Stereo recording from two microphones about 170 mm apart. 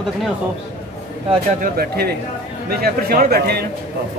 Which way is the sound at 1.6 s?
65° right (ahead or behind).